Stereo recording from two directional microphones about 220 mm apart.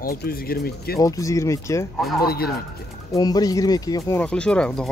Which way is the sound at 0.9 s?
15° left (ahead or behind).